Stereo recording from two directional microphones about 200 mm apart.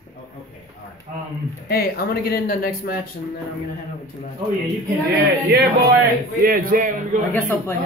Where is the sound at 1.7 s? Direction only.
50° left (ahead or behind).